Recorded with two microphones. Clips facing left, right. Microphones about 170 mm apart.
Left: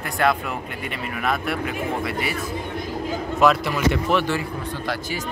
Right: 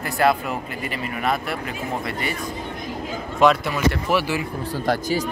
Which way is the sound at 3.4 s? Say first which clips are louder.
Right 1 dB; centre (ahead or behind).